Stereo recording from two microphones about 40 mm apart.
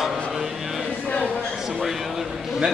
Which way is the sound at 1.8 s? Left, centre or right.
Centre.